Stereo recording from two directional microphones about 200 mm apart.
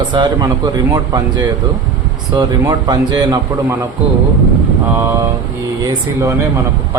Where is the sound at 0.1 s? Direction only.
20° right (ahead or behind).